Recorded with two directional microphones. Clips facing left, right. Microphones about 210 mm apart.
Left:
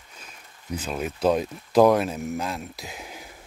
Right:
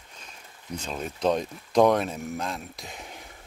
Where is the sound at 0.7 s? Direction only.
5° left (ahead or behind).